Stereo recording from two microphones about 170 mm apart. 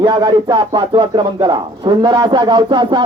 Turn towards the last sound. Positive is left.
turn(degrees=-25)  # may be behind; listen again after turning